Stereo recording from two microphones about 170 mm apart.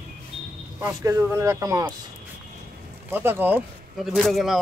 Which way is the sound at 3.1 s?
10° right (ahead or behind).